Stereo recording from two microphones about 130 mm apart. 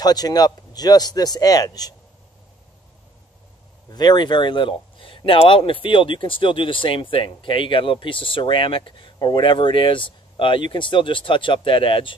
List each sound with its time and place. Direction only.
0.0 s speech: 30° left (ahead or behind)
3.9 s speech: 35° left (ahead or behind)